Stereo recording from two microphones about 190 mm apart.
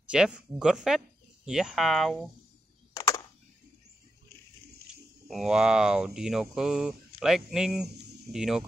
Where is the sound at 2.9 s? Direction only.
15° left (ahead or behind).